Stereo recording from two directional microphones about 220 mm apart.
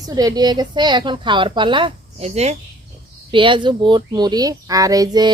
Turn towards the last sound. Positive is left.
turn(degrees=-15)  # may be behind; listen again after turning